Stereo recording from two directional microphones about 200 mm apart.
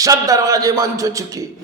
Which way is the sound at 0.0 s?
15° right (ahead or behind).